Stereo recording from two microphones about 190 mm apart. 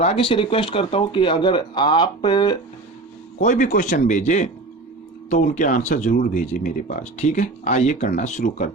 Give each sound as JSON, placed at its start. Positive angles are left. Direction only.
{"t": 0.0, "sound": "speech", "side_deg": 30}
{"t": 3.4, "sound": "speech", "side_deg": 40}